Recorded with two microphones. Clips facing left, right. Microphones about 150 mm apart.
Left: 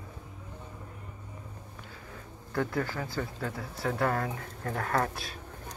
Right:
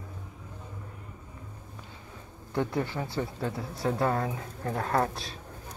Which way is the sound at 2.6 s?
25° right (ahead or behind).